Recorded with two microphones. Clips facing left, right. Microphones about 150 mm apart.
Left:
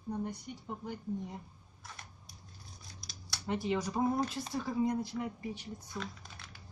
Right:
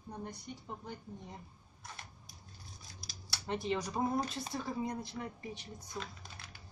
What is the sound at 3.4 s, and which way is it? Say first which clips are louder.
A woman's voice: left 2 dB; 10° left (ahead or behind).